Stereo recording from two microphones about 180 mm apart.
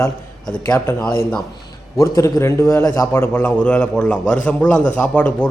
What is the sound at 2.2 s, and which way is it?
A man's voice, 15° left (ahead or behind).